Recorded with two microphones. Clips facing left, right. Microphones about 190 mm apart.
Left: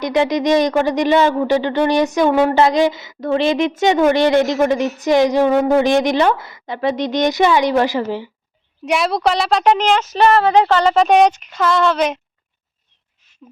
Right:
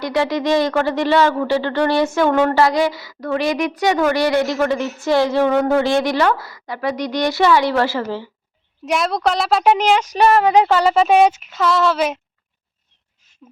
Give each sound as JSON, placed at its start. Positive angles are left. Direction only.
{"t": 0.0, "sound": "a woman's voice", "side_deg": 20}
{"t": 8.9, "sound": "a woman's voice", "side_deg": 0}